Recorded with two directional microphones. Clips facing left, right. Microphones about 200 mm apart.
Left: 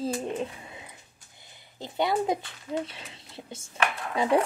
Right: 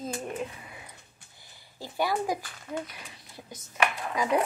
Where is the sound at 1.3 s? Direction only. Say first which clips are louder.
Left 2 dB; 20° left (ahead or behind).